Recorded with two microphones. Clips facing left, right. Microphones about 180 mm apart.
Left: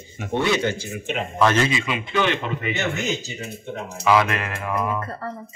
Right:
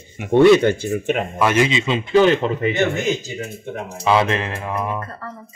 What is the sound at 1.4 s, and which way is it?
A man's voice, 15° right (ahead or behind).